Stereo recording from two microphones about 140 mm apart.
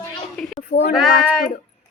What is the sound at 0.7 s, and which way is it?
Speech, 85° left.